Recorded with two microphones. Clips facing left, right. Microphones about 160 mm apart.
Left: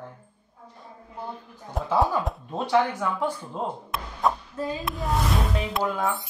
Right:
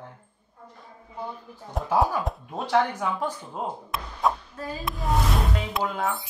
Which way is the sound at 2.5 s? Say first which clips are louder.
Left 1 dB; 15° left (ahead or behind).